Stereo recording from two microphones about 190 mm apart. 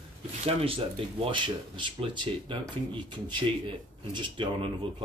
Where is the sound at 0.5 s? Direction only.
30° right (ahead or behind).